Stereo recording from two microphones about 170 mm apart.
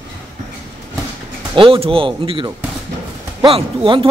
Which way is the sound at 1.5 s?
30° right (ahead or behind).